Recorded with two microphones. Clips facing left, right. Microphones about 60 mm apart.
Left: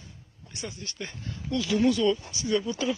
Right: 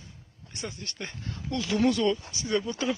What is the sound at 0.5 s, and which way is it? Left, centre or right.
Speech, right.